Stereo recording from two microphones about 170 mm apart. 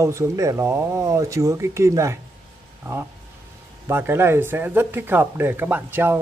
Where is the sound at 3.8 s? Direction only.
15° right (ahead or behind).